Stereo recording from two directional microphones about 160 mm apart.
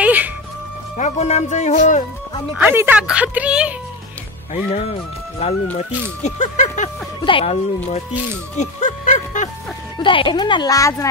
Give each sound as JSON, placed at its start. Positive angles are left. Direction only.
{"t": 0.0, "sound": "music", "side_deg": -10}
{"t": 0.9, "sound": "speech", "side_deg": 45}
{"t": 2.5, "sound": "speech", "side_deg": -10}
{"t": 4.6, "sound": "speech", "side_deg": 40}
{"t": 6.2, "sound": "speech", "side_deg": 50}
{"t": 7.2, "sound": "speech", "side_deg": 30}
{"t": 8.5, "sound": "music", "side_deg": 50}
{"t": 9.9, "sound": "speech", "side_deg": 30}